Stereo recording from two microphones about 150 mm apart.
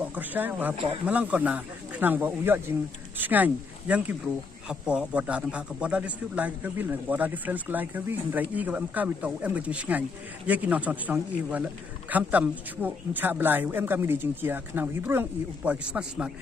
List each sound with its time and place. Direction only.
0.1 s speech: 10° right (ahead or behind)